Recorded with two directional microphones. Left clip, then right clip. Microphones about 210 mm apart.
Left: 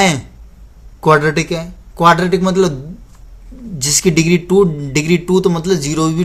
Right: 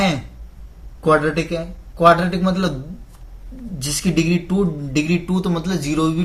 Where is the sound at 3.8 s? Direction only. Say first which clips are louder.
Left 7 dB; 50° left (ahead or behind).